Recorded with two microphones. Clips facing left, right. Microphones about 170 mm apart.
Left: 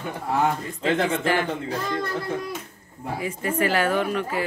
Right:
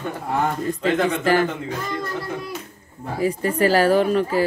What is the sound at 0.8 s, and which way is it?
Speech, 40° right (ahead or behind).